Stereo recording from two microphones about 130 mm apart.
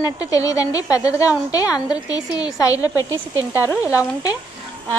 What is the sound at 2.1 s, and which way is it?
A woman's voice, 30° left (ahead or behind).